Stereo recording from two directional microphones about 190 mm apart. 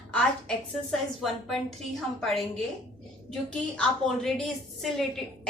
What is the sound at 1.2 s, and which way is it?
A woman's voice, centre (ahead or behind).